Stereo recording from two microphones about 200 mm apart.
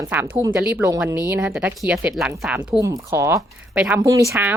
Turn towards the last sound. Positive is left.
turn(degrees=-15)  # may be behind; listen again after turning